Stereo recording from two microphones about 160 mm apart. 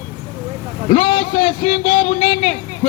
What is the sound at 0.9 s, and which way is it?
A man's voice, 40° left (ahead or behind).